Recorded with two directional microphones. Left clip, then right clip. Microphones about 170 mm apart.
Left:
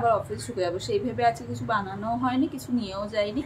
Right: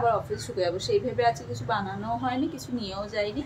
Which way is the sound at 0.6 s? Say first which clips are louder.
Right 1 dB; 5° left (ahead or behind).